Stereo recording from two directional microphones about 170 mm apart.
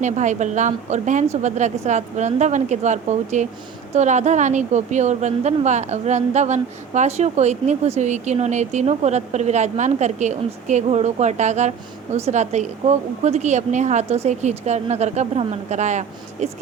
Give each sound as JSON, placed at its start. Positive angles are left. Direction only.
{"t": 0.0, "sound": "a woman's voice", "side_deg": -45}